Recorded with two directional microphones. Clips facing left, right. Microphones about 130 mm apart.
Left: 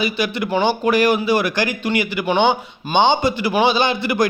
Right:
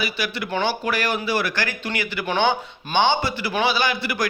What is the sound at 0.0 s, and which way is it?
A man's voice, 20° left (ahead or behind).